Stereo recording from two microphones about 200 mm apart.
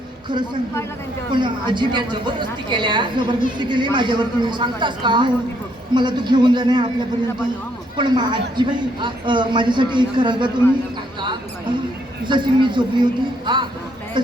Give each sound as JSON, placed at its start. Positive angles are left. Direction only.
{"t": 1.3, "sound": "a man's voice", "side_deg": -25}
{"t": 7.9, "sound": "a man's voice", "side_deg": -20}
{"t": 12.2, "sound": "a man's voice", "side_deg": -25}